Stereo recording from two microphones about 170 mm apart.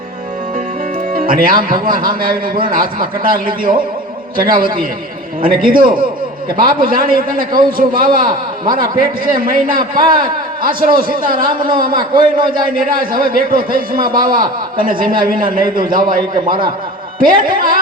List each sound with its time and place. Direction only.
1.1 s music: 55° right (ahead or behind)
1.7 s a man's voice: 55° right (ahead or behind)